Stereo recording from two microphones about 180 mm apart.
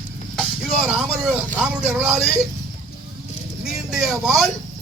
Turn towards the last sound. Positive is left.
turn(degrees=0)  # may be behind; listen again after turning